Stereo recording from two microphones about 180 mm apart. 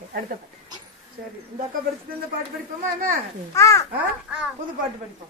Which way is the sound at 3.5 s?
15° left (ahead or behind).